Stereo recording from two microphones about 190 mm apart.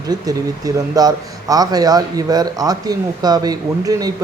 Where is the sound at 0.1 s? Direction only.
20° right (ahead or behind).